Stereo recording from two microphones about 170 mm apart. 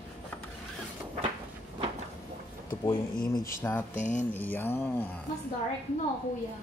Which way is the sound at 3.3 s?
15° left (ahead or behind).